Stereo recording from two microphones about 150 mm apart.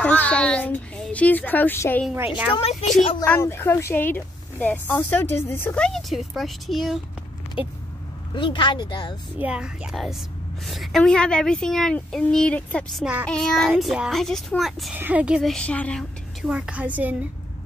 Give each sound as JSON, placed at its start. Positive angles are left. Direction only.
{"t": 0.0, "sound": "speech", "side_deg": 10}
{"t": 2.1, "sound": "a woman's voice", "side_deg": -10}
{"t": 2.5, "sound": "a woman's voice", "side_deg": 45}
{"t": 3.3, "sound": "speech", "side_deg": 15}
{"t": 8.4, "sound": "speech", "side_deg": 35}
{"t": 9.4, "sound": "a woman's voice", "side_deg": -5}
{"t": 15.5, "sound": "speech", "side_deg": 10}
{"t": 16.4, "sound": "a woman's voice", "side_deg": -10}